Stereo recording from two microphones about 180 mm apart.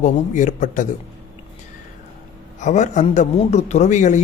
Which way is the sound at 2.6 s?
40° left (ahead or behind).